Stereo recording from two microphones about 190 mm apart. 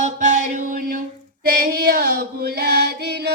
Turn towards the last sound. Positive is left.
turn(degrees=-60)  # may be behind; listen again after turning